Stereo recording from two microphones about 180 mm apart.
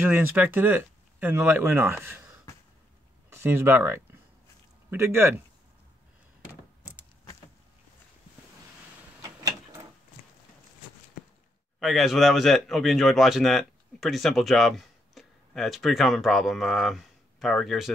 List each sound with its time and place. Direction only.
0.0 s speech: 10° right (ahead or behind)
3.3 s speech: 15° right (ahead or behind)
9.2 s a sound: 20° right (ahead or behind)
11.8 s speech: centre (ahead or behind)